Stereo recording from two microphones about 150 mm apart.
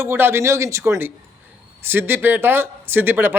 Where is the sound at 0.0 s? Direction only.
15° right (ahead or behind).